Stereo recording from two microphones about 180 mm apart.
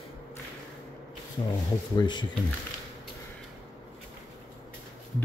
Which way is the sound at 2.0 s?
25° left (ahead or behind).